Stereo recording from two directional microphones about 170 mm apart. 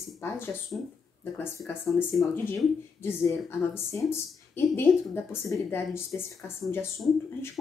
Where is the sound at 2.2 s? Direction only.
10° left (ahead or behind).